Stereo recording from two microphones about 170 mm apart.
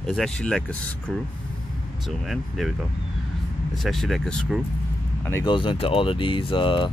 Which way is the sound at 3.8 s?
Centre (ahead or behind).